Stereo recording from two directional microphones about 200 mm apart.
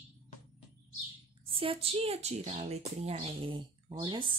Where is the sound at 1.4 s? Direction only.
25° right (ahead or behind).